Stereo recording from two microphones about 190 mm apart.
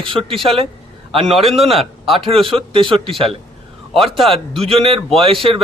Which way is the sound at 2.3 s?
30° right (ahead or behind).